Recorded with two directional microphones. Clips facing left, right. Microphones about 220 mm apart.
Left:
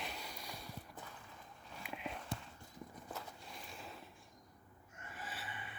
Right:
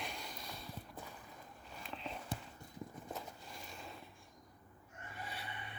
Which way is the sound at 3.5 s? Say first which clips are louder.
Left 1 dB; centre (ahead or behind).